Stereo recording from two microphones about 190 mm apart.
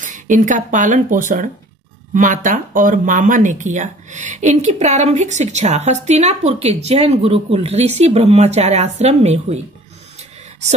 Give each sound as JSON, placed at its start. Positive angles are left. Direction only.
{"t": 0.0, "sound": "speech", "side_deg": -40}